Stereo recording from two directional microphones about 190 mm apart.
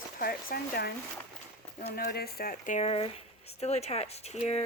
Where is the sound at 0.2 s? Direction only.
50° left (ahead or behind).